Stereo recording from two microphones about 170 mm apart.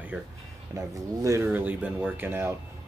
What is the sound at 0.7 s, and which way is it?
Speech, 20° right (ahead or behind).